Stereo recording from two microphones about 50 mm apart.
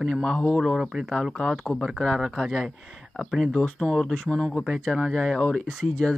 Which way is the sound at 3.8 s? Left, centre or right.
Centre.